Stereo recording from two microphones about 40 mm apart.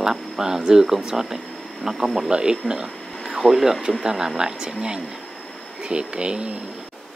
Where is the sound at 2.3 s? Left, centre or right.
Centre.